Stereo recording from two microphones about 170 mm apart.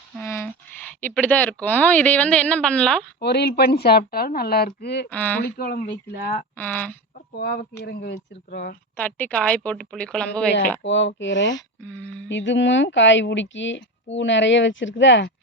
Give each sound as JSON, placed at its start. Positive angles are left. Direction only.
{"t": 1.0, "sound": "speech", "side_deg": 10}
{"t": 3.2, "sound": "a woman's voice", "side_deg": 75}
{"t": 5.0, "sound": "speech", "side_deg": 10}
{"t": 5.4, "sound": "speech", "side_deg": 60}
{"t": 6.6, "sound": "speech", "side_deg": 10}
{"t": 7.3, "sound": "a woman's voice", "side_deg": 65}
{"t": 7.8, "sound": "a woman's voice", "side_deg": 80}
{"t": 9.0, "sound": "speech", "side_deg": 10}
{"t": 10.8, "sound": "speech", "side_deg": 90}
{"t": 11.9, "sound": "speech", "side_deg": 10}
{"t": 12.3, "sound": "speech", "side_deg": 90}